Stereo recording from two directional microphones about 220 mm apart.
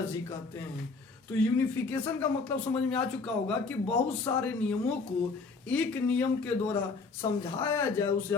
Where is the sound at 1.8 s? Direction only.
10° left (ahead or behind).